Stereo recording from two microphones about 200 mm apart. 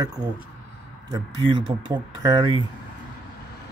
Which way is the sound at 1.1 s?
20° right (ahead or behind).